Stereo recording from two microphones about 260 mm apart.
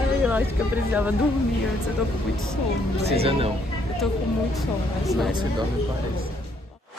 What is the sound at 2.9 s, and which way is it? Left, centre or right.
Speech, right.